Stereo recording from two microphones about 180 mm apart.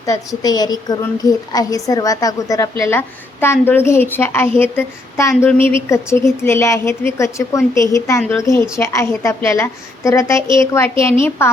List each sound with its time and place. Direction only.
0.0 s a woman's voice: 20° left (ahead or behind)